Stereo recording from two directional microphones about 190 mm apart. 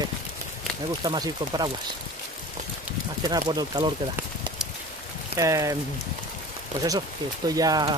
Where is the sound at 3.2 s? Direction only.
20° right (ahead or behind).